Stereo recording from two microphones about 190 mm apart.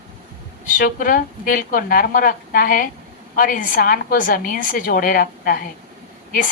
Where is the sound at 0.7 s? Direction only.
45° left (ahead or behind).